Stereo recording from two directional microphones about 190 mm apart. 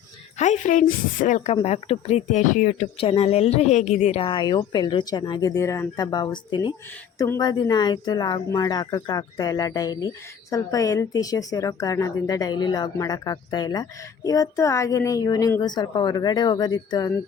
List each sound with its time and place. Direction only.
0.3 s a woman's voice: 40° left (ahead or behind)
3.0 s a woman's voice: 30° left (ahead or behind)